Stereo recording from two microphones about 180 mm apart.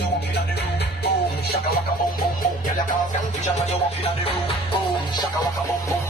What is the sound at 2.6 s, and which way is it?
Music, 45° left (ahead or behind).